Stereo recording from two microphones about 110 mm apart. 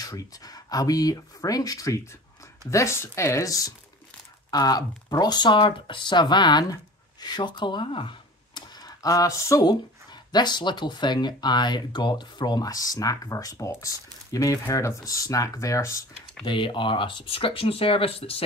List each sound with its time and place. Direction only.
0.0 s speech: 35° left (ahead or behind)
16.4 s speech: 50° left (ahead or behind)